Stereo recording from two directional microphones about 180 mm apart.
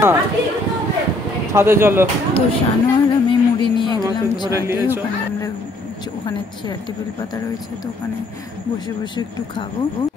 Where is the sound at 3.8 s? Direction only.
25° left (ahead or behind).